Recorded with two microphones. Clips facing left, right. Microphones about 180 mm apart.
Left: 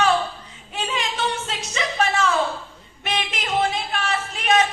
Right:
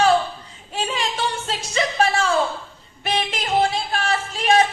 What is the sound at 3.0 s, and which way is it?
Music, 35° right (ahead or behind).